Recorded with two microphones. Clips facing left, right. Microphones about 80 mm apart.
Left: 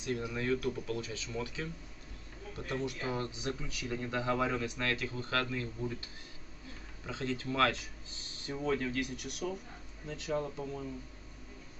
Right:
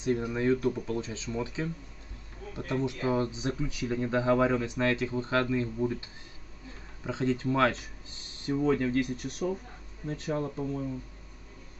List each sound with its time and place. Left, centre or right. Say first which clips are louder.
0.0 s speech: right 7 dB; right
7.1 s speech: right 8 dB; right
8.7 s speech: right 7 dB; right